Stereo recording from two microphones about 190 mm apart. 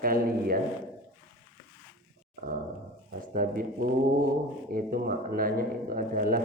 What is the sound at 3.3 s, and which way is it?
Speech, 50° right (ahead or behind).